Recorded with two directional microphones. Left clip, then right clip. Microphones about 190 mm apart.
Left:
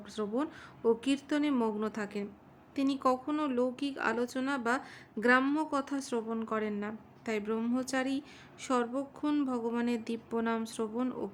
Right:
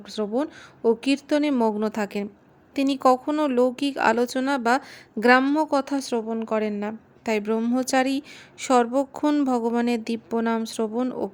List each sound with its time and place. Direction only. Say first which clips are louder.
0.1 s a woman's voice: right 9 dB; 30° right (ahead or behind)